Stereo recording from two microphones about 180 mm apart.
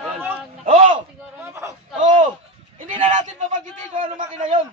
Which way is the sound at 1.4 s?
15° right (ahead or behind).